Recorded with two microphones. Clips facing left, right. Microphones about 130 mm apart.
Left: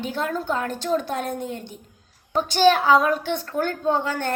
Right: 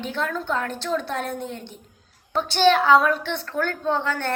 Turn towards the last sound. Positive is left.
turn(degrees=45)  # may be behind; listen again after turning